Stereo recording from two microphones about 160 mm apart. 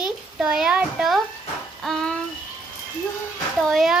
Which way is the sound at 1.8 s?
Centre (ahead or behind).